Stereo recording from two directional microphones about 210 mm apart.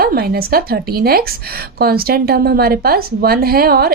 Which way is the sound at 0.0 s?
45° right (ahead or behind).